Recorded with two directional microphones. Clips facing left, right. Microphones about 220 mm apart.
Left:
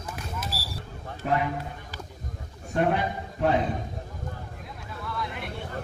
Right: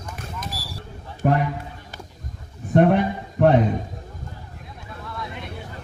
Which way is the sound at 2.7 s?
55° right (ahead or behind).